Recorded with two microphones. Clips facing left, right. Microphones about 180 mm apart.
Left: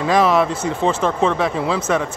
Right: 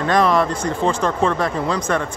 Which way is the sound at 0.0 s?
5° left (ahead or behind).